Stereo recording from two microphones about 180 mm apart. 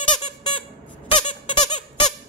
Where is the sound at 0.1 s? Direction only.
25° left (ahead or behind).